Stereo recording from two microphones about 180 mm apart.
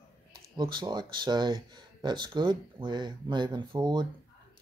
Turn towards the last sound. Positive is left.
turn(degrees=-25)  # may be behind; listen again after turning